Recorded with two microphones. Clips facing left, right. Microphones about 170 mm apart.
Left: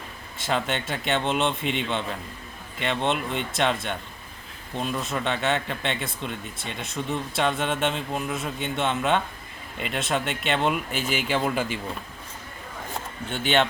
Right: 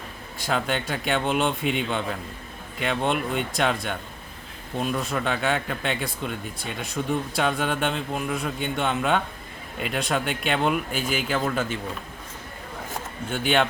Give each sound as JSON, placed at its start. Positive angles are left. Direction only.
{"t": 0.3, "sound": "speech", "side_deg": 0}
{"t": 13.3, "sound": "speech", "side_deg": 0}